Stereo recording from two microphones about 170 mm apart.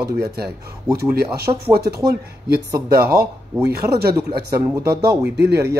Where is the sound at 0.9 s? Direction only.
20° right (ahead or behind).